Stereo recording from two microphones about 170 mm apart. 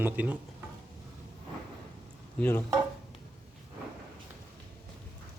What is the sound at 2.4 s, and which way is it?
Speech, 10° left (ahead or behind).